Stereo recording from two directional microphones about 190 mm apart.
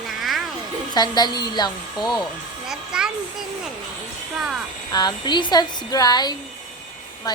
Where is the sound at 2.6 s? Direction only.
5° right (ahead or behind).